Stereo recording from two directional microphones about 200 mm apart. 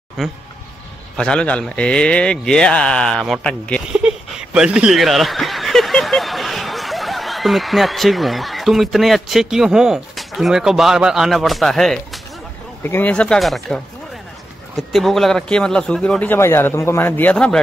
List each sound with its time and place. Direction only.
0.2 s speech: centre (ahead or behind)
14.8 s speech: centre (ahead or behind)